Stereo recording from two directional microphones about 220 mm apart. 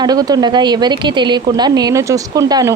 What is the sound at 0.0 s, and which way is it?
Speech, 15° right (ahead or behind).